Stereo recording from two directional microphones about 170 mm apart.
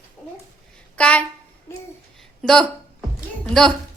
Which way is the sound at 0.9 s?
5° left (ahead or behind).